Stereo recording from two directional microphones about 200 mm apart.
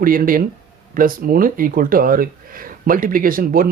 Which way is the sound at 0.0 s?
45° right (ahead or behind).